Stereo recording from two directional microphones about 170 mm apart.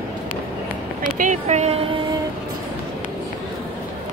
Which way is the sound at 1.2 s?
45° right (ahead or behind).